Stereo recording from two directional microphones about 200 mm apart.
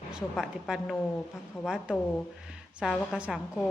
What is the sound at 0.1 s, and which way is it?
A woman's voice, 5° right (ahead or behind).